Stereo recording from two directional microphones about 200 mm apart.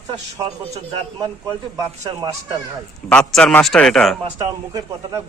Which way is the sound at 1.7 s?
20° right (ahead or behind).